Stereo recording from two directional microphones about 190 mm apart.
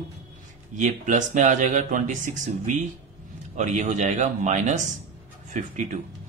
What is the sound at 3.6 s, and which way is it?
Speech, 40° right (ahead or behind).